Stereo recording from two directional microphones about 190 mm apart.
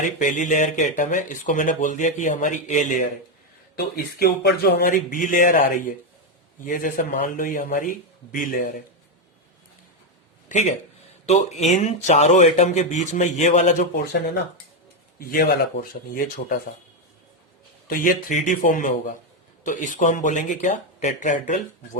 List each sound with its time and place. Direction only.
0.0 s speech: 45° left (ahead or behind)
3.8 s speech: 55° left (ahead or behind)
11.3 s speech: 35° left (ahead or behind)
15.2 s speech: 50° left (ahead or behind)
17.8 s speech: 45° left (ahead or behind)